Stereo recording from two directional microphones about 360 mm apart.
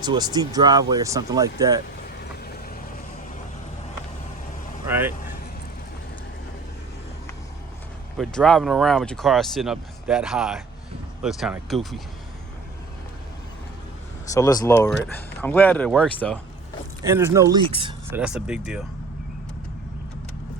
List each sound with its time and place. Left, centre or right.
0.0 s speech: centre
4.9 s speech: centre
8.2 s speech: centre
14.3 s speech: centre
17.0 s speech: centre
18.2 s speech: centre